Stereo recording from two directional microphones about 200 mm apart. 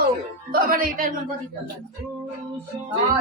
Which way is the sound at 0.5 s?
45° right (ahead or behind).